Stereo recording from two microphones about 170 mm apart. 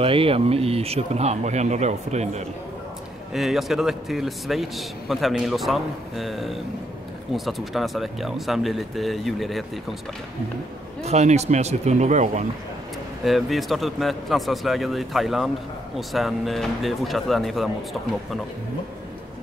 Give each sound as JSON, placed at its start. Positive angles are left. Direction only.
{"t": 0.0, "sound": "speech", "side_deg": -35}
{"t": 3.3, "sound": "a man's voice", "side_deg": 0}
{"t": 11.0, "sound": "speech", "side_deg": -40}
{"t": 13.2, "sound": "a man's voice", "side_deg": 0}